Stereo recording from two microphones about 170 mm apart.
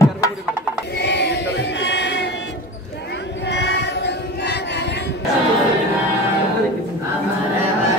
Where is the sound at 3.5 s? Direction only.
90° left.